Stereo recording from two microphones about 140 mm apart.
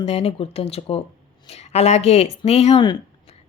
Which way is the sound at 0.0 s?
45° left (ahead or behind).